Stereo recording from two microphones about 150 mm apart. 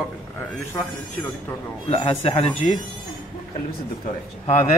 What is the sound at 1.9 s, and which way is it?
Speech, 40° left (ahead or behind).